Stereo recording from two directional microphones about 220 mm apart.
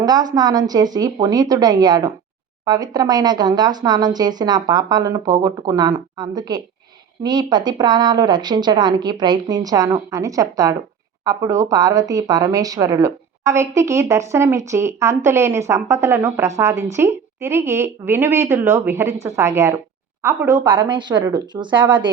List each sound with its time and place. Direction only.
0.0 s a woman's voice: 20° right (ahead or behind)